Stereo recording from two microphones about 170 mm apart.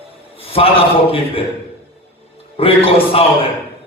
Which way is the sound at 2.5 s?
35° left (ahead or behind).